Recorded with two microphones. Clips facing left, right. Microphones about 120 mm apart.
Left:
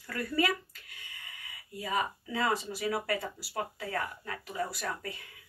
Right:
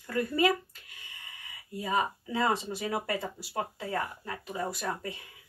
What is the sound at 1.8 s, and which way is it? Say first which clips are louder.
Speech: right 3 dB; 30° right (ahead or behind).